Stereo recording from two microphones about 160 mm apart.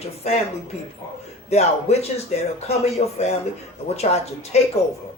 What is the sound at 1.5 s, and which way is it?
A man's voice, 40° left (ahead or behind).